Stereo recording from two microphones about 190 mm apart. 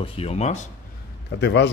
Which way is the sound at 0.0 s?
30° left (ahead or behind).